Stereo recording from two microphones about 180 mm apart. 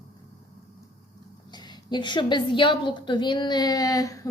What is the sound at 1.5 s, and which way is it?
A woman's voice, 25° left (ahead or behind).